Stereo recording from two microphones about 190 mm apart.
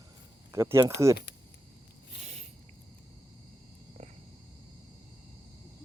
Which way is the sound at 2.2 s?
35° right (ahead or behind).